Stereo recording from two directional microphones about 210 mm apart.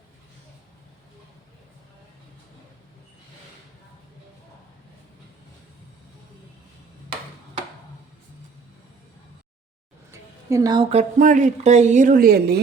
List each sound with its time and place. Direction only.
10.1 s speech: 15° right (ahead or behind); by 12.6 s 50° right (ahead or behind)